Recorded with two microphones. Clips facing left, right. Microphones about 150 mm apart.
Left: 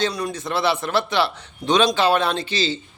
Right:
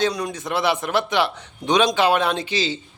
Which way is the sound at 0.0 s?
15° right (ahead or behind).